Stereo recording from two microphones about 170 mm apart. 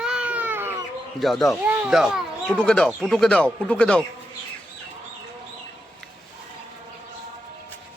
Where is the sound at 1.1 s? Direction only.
Centre (ahead or behind).